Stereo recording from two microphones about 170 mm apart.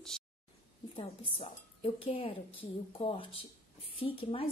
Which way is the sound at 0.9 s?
35° left (ahead or behind).